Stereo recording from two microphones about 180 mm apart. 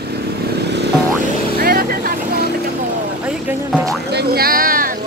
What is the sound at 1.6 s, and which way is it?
Vehicle, 55° right (ahead or behind).